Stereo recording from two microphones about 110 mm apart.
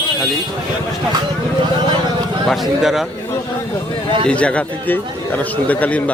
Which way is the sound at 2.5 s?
5° right (ahead or behind).